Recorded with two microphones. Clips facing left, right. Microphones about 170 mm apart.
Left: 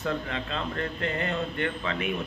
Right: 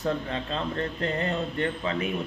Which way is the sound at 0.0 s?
35° right (ahead or behind).